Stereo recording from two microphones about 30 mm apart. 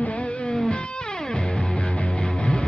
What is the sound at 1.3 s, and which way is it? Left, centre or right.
Music, left.